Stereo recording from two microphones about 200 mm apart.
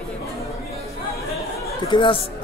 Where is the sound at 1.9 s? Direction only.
25° left (ahead or behind).